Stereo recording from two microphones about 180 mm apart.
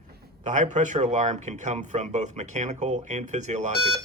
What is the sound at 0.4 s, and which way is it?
Speech, 40° right (ahead or behind).